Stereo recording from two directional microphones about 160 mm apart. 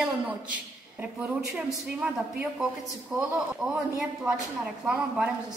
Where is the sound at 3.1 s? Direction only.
15° right (ahead or behind).